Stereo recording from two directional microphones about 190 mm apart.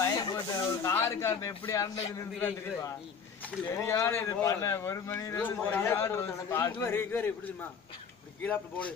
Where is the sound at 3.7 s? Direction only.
15° left (ahead or behind).